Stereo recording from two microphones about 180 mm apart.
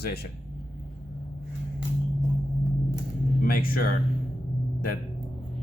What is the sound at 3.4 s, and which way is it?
Speech, 55° left (ahead or behind).